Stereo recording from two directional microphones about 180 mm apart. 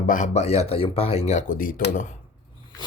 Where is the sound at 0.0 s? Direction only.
45° left (ahead or behind).